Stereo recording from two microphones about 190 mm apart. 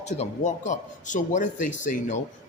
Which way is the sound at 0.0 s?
40° left (ahead or behind).